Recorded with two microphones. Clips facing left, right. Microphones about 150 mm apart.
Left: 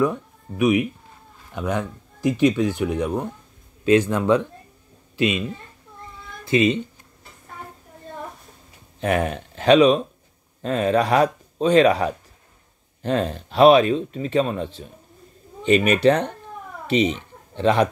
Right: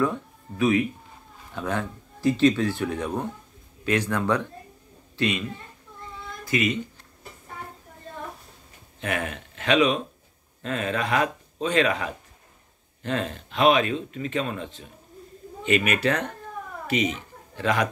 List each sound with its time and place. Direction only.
0.0 s a man's voice: 15° left (ahead or behind)
6.4 s speech: 25° left (ahead or behind)
9.0 s speech: 40° left (ahead or behind)